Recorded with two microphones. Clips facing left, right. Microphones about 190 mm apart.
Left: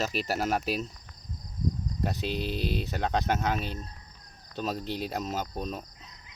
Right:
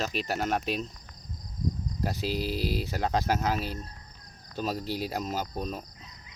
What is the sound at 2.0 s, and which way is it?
Speech, centre (ahead or behind).